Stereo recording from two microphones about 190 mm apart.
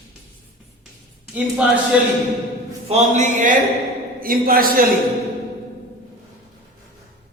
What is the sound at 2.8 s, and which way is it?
A man's voice, 40° right (ahead or behind).